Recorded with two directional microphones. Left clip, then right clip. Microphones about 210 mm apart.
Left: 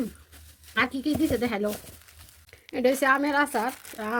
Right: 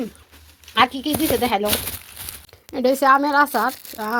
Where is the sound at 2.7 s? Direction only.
15° right (ahead or behind).